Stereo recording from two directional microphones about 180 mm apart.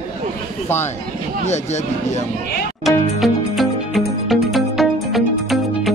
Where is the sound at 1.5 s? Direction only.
40° left (ahead or behind).